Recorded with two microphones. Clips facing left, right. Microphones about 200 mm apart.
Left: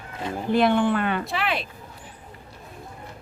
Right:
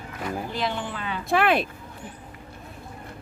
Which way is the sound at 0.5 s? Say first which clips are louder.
Left 10 dB; 55° left (ahead or behind).